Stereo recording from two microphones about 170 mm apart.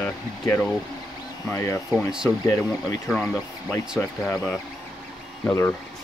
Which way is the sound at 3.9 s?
5° left (ahead or behind).